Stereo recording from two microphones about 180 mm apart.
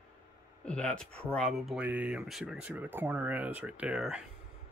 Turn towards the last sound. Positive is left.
turn(degrees=-5)  # may be behind; listen again after turning